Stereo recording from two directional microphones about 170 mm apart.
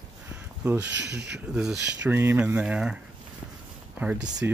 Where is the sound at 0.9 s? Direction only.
85° right.